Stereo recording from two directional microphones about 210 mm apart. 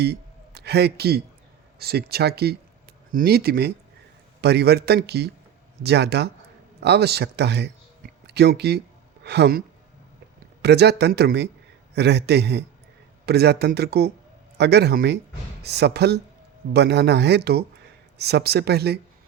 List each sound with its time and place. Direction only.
0.0 s a man's voice: 50° right (ahead or behind)